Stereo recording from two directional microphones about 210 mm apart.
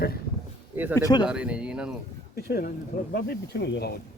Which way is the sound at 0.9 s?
15° left (ahead or behind).